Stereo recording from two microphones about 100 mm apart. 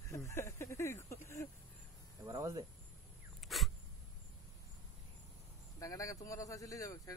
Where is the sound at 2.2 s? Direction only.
35° right (ahead or behind).